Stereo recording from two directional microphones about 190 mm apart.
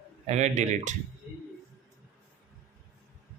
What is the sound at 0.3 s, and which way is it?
Speech, 35° right (ahead or behind).